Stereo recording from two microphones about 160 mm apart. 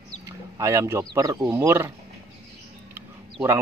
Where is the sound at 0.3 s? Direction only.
20° right (ahead or behind).